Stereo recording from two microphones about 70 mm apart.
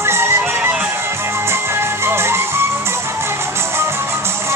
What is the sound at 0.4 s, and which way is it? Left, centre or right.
Music, right.